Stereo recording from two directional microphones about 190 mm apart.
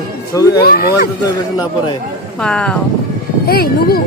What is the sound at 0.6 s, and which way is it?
Speech, 50° left (ahead or behind).